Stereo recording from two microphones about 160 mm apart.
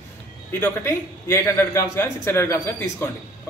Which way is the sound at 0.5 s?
15° left (ahead or behind).